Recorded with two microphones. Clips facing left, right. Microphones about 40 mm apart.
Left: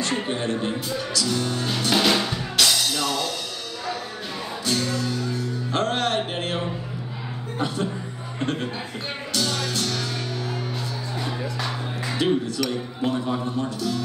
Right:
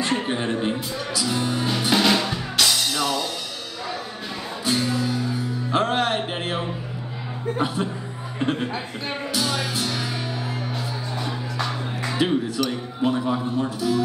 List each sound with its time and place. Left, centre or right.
0.0 s speech: centre
2.0 s drum: centre
4.6 s music: centre
7.5 s speech: centre
9.3 s music: centre
12.2 s speech: centre